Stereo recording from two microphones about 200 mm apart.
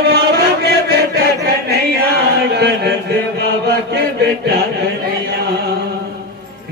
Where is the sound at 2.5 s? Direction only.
55° right (ahead or behind).